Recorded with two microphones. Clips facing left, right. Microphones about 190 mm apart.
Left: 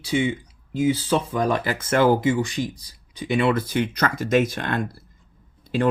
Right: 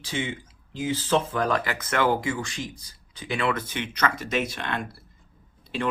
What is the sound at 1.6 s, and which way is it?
Speech, 30° left (ahead or behind).